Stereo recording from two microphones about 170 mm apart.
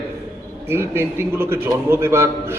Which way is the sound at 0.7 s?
15° right (ahead or behind).